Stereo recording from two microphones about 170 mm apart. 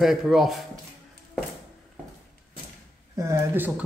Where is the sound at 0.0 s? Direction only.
Centre (ahead or behind).